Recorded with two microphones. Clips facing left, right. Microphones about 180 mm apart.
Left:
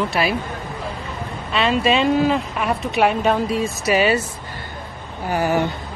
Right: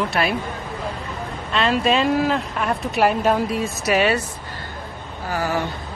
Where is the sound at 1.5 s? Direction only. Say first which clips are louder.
Left 1 dB; centre (ahead or behind).